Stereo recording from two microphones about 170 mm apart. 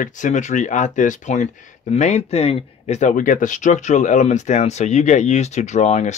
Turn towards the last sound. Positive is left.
turn(degrees=45)  # may be behind; listen again after turning